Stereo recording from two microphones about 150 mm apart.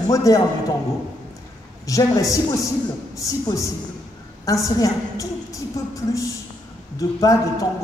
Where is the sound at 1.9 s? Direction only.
20° left (ahead or behind).